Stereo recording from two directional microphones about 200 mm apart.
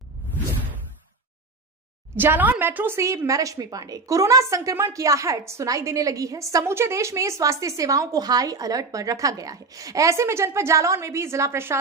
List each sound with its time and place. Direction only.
2.1 s a woman's voice: 10° right (ahead or behind)